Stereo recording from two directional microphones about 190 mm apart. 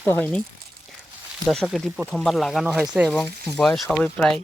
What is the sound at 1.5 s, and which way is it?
Speech, centre (ahead or behind).